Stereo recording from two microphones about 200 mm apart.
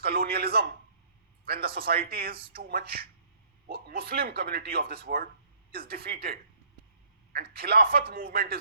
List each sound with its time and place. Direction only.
0.0 s a man's voice: 50° right (ahead or behind)